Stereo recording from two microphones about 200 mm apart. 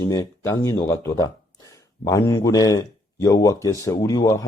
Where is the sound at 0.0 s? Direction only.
15° left (ahead or behind).